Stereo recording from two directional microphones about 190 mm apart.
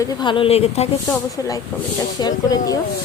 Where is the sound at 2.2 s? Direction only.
20° left (ahead or behind).